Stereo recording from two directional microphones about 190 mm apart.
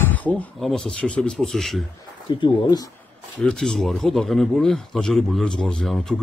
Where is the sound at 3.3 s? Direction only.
5° left (ahead or behind).